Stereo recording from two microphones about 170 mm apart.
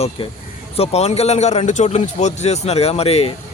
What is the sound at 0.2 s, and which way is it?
Speech, 30° left (ahead or behind).